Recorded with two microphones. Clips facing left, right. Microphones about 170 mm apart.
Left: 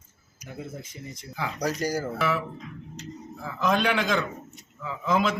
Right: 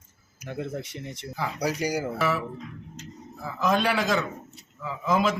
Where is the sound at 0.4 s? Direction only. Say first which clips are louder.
Right 6 dB; 75° right (ahead or behind).